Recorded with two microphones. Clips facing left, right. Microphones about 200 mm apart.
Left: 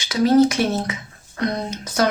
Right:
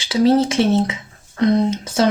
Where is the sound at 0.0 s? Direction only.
30° right (ahead or behind).